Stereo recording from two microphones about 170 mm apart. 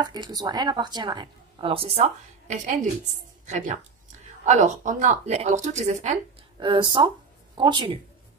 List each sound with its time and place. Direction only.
0.0 s a woman's voice: 25° right (ahead or behind); by 6.1 s 40° right (ahead or behind)
6.6 s a woman's voice: 30° right (ahead or behind)